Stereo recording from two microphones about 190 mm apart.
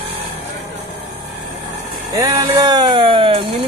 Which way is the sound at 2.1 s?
20° right (ahead or behind).